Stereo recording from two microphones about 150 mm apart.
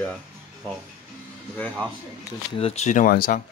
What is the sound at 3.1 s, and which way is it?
Speech, 70° left (ahead or behind).